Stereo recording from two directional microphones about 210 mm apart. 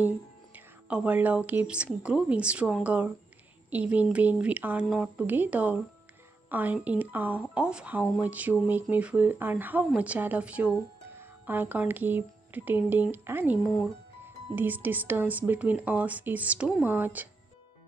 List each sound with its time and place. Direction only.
0.8 s speech: 5° right (ahead or behind)